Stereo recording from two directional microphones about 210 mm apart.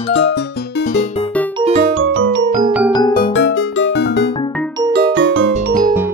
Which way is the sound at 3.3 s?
60° left (ahead or behind).